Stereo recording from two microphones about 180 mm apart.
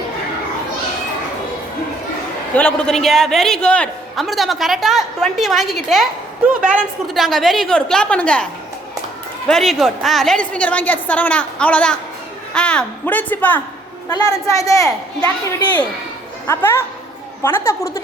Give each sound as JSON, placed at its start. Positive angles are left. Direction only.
{"t": 2.6, "sound": "a man's voice", "side_deg": 5}
{"t": 9.5, "sound": "a woman's voice", "side_deg": 0}
{"t": 14.1, "sound": "a woman's voice", "side_deg": 20}